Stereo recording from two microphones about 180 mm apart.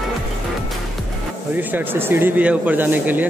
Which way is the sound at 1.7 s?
10° right (ahead or behind).